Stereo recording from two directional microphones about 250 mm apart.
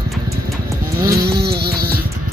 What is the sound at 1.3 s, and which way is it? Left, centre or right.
Vehicle, right.